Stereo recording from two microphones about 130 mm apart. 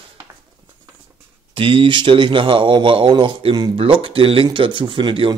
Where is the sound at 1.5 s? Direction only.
40° right (ahead or behind).